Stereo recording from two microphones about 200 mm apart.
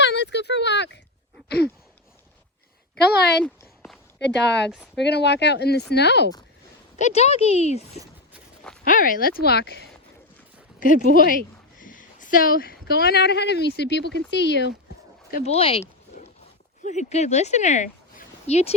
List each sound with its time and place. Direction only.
0.0 s a sound: 60° left (ahead or behind)
3.0 s speech: 55° left (ahead or behind)
3.4 s a sound: 5° left (ahead or behind)
4.2 s speech: 60° left (ahead or behind)
7.0 s a woman's voice: 30° left (ahead or behind)
8.8 s speech: 45° left (ahead or behind)
10.8 s speech: 40° left (ahead or behind); by 14.7 s 60° left (ahead or behind)
15.4 s a woman's voice: 30° left (ahead or behind)